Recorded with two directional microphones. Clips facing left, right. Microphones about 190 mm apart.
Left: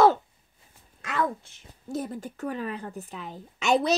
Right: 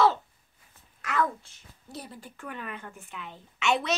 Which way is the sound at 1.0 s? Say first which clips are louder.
Even; 25° left (ahead or behind).